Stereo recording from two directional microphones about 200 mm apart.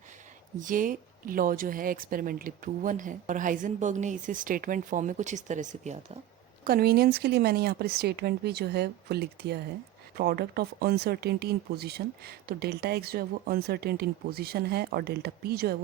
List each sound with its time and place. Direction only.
0.6 s speech: 40° right (ahead or behind)
6.7 s speech: 50° right (ahead or behind)